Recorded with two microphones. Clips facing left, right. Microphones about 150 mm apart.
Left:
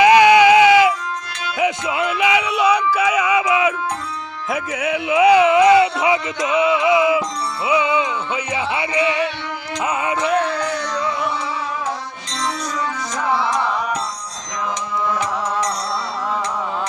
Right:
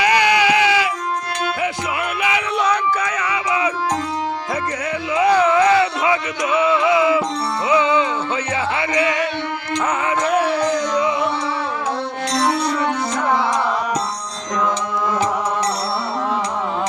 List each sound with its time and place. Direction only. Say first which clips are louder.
0.0 s sheep: left 6 dB; 20° left (ahead or behind)
1.6 s music: left 3 dB; 15° left (ahead or behind)
5.3 s music: left 2 dB; 15° left (ahead or behind)
10.2 s music: right 2 dB; 5° right (ahead or behind)
12.3 s music: right 5 dB; 65° right (ahead or behind)